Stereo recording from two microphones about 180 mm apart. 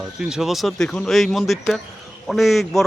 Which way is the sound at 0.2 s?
5° right (ahead or behind).